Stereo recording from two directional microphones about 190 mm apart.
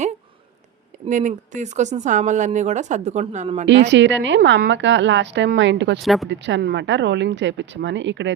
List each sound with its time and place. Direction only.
1.0 s speech: 40° right (ahead or behind)
3.7 s a woman's voice: 70° right (ahead or behind)